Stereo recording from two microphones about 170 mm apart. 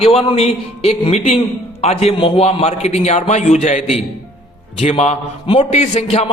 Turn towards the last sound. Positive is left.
turn(degrees=40)  # may be behind; listen again after turning